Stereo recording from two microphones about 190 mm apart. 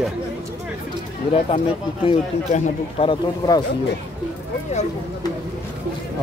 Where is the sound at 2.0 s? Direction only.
35° left (ahead or behind).